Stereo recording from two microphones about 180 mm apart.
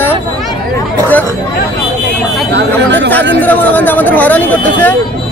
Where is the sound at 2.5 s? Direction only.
80° right.